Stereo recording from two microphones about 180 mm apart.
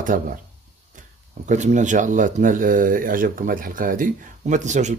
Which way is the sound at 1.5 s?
40° right (ahead or behind).